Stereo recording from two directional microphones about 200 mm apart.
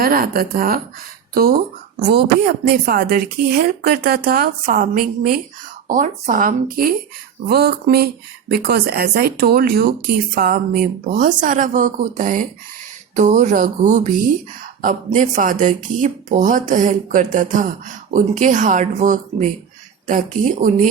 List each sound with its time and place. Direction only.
0.0 s a woman's voice: 45° right (ahead or behind)